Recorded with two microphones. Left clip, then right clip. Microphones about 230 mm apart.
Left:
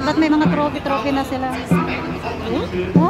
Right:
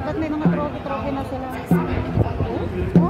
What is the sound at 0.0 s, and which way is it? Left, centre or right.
Speech, left.